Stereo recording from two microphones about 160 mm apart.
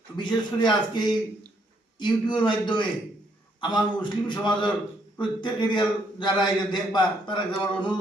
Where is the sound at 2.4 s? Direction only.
30° left (ahead or behind).